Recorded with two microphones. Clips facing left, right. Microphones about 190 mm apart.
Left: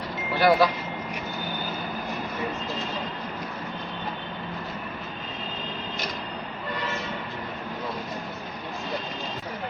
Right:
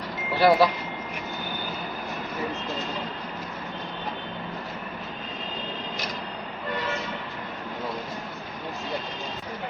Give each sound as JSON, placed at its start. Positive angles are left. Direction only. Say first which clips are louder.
{"t": 0.3, "sound": "speech", "louder": "right 1 dB", "side_deg": -25}